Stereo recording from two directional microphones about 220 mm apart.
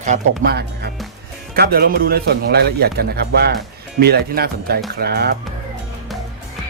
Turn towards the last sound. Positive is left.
turn(degrees=-45)  # may be behind; listen again after turning